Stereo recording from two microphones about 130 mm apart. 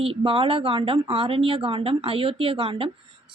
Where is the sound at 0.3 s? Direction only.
45° right (ahead or behind).